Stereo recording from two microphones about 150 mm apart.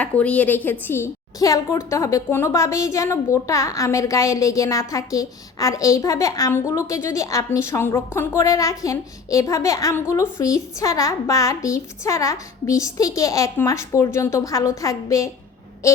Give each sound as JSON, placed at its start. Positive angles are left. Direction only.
{"t": 0.0, "sound": "a woman's voice", "side_deg": 10}